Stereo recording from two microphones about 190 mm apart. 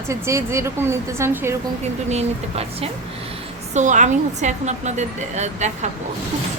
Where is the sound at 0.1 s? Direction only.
15° right (ahead or behind).